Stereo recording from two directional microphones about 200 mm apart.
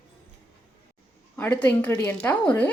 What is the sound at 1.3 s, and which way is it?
A woman's voice, 10° left (ahead or behind).